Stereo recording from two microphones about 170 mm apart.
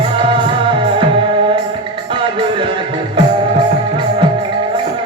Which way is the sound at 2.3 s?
30° right (ahead or behind).